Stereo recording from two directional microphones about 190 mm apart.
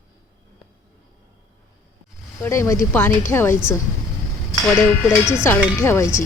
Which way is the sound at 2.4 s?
15° left (ahead or behind).